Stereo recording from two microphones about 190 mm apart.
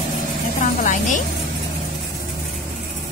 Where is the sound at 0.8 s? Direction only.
45° left (ahead or behind).